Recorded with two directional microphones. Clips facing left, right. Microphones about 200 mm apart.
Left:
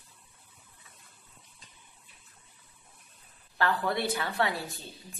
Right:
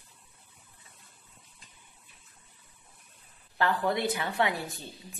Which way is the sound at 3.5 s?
20° right (ahead or behind).